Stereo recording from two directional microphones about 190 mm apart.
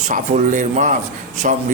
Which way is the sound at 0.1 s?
40° right (ahead or behind).